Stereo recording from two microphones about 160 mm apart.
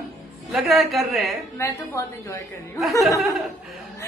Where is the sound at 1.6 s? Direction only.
20° left (ahead or behind).